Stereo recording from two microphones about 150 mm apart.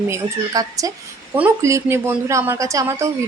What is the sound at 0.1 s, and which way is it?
A woman's voice, 20° right (ahead or behind).